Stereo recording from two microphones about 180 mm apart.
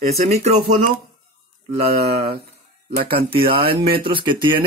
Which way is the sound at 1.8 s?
60° right (ahead or behind).